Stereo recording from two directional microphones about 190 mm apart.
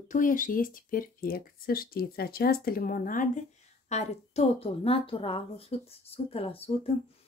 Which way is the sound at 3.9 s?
35° left (ahead or behind).